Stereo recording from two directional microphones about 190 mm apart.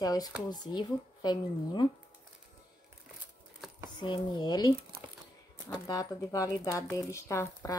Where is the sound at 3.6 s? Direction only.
Centre (ahead or behind).